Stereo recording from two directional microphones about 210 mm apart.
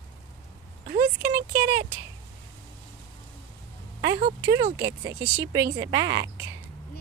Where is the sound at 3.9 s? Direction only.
20° right (ahead or behind).